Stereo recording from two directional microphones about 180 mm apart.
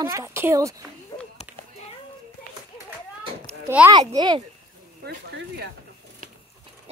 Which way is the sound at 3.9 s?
20° right (ahead or behind).